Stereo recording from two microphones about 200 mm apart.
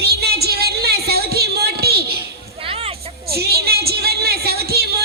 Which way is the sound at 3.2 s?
50° right (ahead or behind).